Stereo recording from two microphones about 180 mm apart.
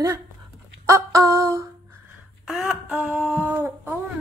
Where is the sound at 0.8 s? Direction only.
15° right (ahead or behind).